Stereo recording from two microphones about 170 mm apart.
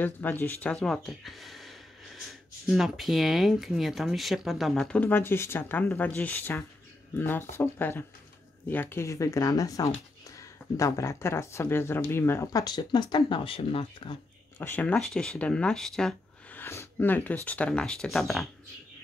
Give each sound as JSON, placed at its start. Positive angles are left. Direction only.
{"t": 0.0, "sound": "speech", "side_deg": 10}
{"t": 14.6, "sound": "speech", "side_deg": 10}